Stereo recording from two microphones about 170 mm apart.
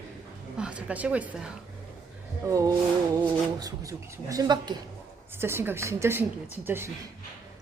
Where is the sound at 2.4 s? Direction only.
20° right (ahead or behind).